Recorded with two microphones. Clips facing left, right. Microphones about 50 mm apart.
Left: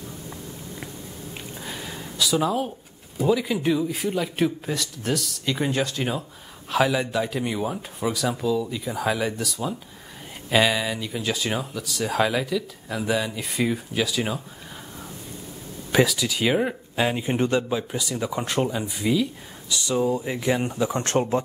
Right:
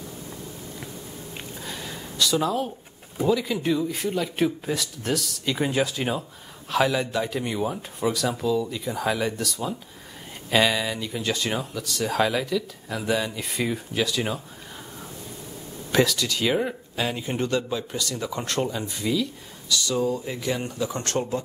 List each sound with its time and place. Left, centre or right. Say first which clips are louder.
1.5 s a sound: even; centre
3.3 s speech: left 1 dB; centre
15.9 s speech: left 1 dB; centre; by 21.4 s left